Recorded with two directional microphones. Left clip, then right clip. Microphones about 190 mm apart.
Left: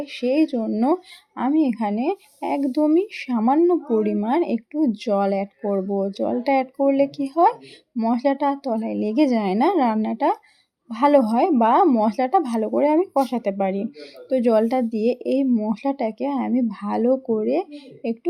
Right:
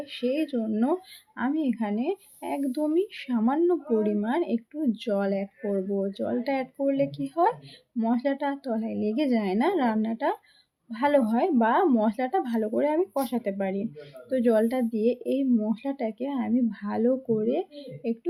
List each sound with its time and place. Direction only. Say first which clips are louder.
0.0 s speech: left 7 dB; 35° left (ahead or behind)